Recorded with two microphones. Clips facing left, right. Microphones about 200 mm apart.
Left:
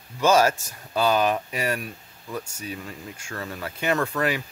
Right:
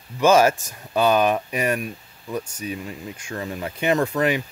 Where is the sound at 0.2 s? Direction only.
15° right (ahead or behind).